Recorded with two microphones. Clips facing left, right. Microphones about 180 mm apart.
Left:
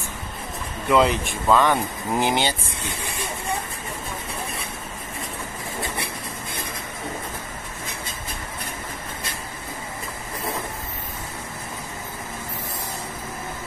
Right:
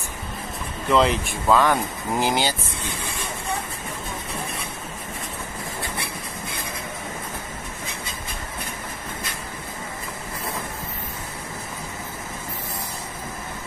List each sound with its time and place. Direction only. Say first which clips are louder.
0.8 s speech: left 1 dB; centre (ahead or behind)